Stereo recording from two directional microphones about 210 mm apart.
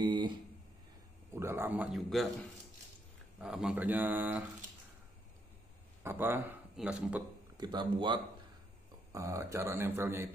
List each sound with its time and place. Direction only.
0.0 s a sound: 20° right (ahead or behind)
1.3 s speech: 10° right (ahead or behind)
3.3 s speech: 5° right (ahead or behind)
6.0 s speech: 10° right (ahead or behind)
7.5 s speech: 20° right (ahead or behind)